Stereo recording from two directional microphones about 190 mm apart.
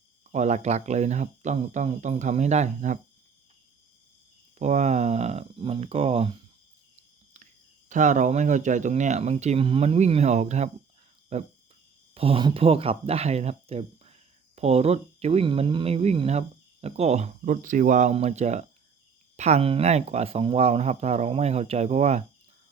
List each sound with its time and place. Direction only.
0.3 s speech: 40° right (ahead or behind)
4.5 s speech: 35° right (ahead or behind)
7.9 s speech: 40° right (ahead or behind)